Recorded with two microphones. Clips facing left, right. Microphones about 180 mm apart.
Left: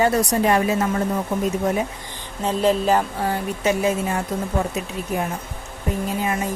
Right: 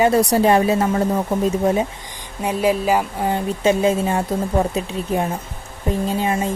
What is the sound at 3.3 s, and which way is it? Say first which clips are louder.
Speech: right 6 dB; 25° right (ahead or behind).